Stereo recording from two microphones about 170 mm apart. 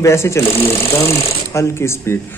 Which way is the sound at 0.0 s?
15° left (ahead or behind).